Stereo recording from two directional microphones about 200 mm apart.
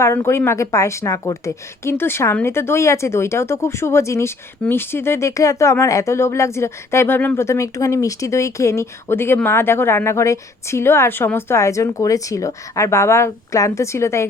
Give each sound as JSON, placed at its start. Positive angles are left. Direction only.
{"t": 0.0, "sound": "a woman's voice", "side_deg": 15}